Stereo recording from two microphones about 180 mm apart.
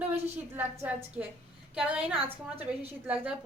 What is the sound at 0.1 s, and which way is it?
A woman's voice, 10° right (ahead or behind).